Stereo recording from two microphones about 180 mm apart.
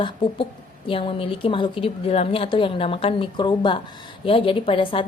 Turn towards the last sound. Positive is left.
turn(degrees=30)  # may be behind; listen again after turning